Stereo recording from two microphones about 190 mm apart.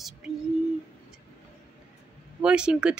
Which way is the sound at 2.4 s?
5° right (ahead or behind).